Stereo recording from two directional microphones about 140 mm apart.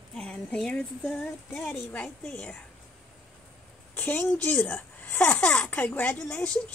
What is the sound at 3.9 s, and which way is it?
Speech, 15° left (ahead or behind).